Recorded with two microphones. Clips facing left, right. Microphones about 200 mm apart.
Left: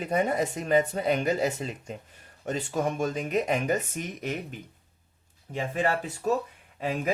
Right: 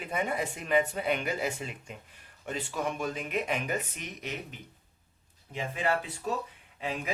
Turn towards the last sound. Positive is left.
turn(degrees=45)  # may be behind; listen again after turning